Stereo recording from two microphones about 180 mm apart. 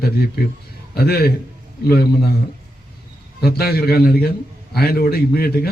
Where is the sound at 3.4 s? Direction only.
60° left (ahead or behind).